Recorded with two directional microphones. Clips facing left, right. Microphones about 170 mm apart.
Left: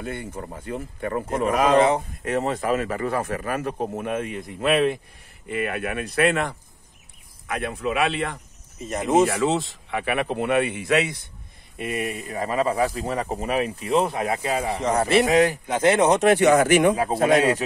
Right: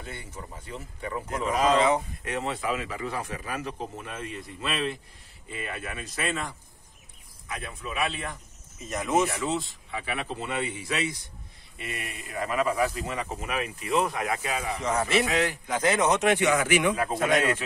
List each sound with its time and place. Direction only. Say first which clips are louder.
0.0 s a man's voice: left 9 dB; 55° left (ahead or behind); by 8.4 s 75° left (ahead or behind)
9.2 s a man's voice: left 7 dB; 65° left (ahead or behind)
11.8 s speech: left 10 dB; 50° left (ahead or behind)
12.3 s speech: left 2 dB; 35° left (ahead or behind)
15.7 s speech: left 4 dB; 25° left (ahead or behind)